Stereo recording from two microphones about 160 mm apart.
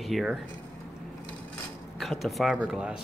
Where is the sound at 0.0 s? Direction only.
Centre (ahead or behind).